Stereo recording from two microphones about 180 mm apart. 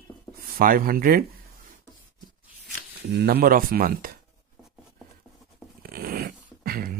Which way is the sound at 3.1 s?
60° right (ahead or behind).